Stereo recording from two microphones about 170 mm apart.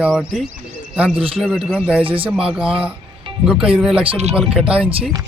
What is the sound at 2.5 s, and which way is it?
Speech, 5° right (ahead or behind).